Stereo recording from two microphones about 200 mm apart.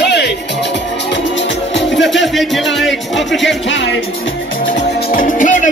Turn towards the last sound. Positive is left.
turn(degrees=40)  # may be behind; listen again after turning